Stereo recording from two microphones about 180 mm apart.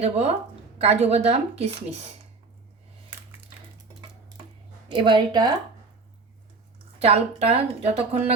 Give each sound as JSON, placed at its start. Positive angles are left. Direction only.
{"t": 0.0, "sound": "a woman's voice", "side_deg": -35}
{"t": 4.9, "sound": "a woman's voice", "side_deg": -25}
{"t": 7.0, "sound": "a woman's voice", "side_deg": -35}